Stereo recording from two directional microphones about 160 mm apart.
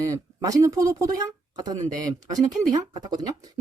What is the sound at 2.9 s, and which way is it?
Speech, 25° right (ahead or behind).